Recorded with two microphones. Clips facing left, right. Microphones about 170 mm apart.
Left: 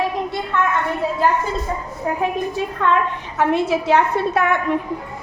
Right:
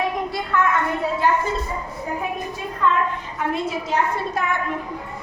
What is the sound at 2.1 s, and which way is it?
A woman's voice, 75° left (ahead or behind).